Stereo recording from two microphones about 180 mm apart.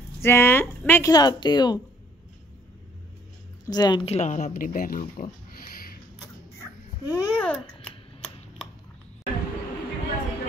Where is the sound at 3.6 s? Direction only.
20° left (ahead or behind).